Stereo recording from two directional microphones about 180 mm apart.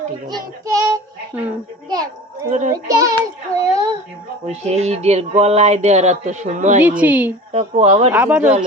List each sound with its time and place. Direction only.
0.3 s child singing: 20° right (ahead or behind)
1.3 s a woman's voice: 10° right (ahead or behind)
1.9 s children playing: 20° right (ahead or behind)
2.5 s a child's voice: 45° right (ahead or behind)
2.9 s a child's voice: 20° right (ahead or behind)
3.6 s a sound: 20° right (ahead or behind)
4.4 s a sound: 35° right (ahead or behind)
6.8 s a woman's voice: 10° right (ahead or behind)
7.5 s a sound: 35° right (ahead or behind)
8.1 s a woman's voice: 10° right (ahead or behind)